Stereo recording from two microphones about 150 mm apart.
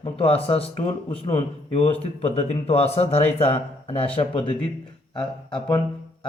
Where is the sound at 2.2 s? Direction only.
45° left (ahead or behind).